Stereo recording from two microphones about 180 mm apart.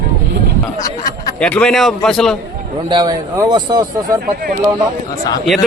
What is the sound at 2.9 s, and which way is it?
Speech, 25° right (ahead or behind).